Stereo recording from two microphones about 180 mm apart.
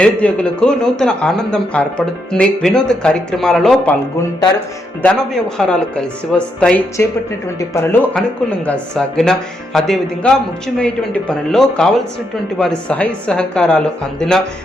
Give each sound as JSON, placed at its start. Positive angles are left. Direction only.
{"t": 0.0, "sound": "a man's voice", "side_deg": 5}
{"t": 5.0, "sound": "a man's voice", "side_deg": 5}
{"t": 7.6, "sound": "speech", "side_deg": 15}
{"t": 8.1, "sound": "a man's voice", "side_deg": 5}